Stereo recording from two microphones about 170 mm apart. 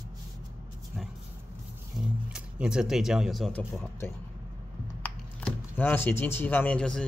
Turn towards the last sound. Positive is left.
turn(degrees=5)  # may be behind; listen again after turning